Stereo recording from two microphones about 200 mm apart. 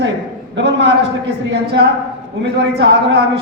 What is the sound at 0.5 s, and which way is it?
Speech, 60° right (ahead or behind).